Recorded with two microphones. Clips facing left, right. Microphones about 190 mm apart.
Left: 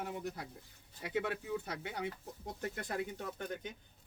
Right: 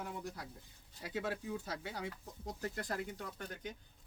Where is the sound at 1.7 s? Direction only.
20° left (ahead or behind).